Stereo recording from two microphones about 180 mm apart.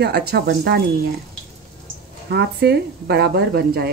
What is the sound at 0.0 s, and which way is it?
Speech, 65° right (ahead or behind).